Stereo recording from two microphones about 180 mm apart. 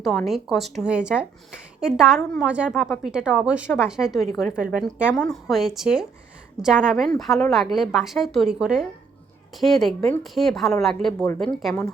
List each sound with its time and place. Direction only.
0.0 s a woman's voice: centre (ahead or behind)